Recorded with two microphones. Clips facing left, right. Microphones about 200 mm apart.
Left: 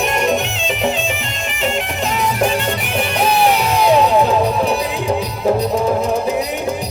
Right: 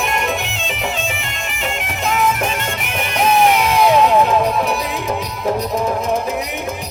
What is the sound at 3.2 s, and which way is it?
Crowd, 35° left (ahead or behind).